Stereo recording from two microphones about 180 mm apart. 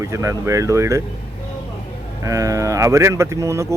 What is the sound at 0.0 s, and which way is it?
Speech, 15° right (ahead or behind).